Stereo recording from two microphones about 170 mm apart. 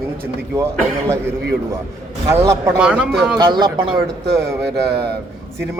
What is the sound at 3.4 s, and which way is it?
Speech, 25° right (ahead or behind).